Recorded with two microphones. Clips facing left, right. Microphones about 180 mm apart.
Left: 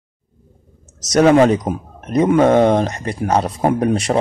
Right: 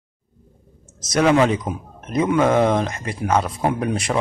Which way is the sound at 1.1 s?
45° left (ahead or behind).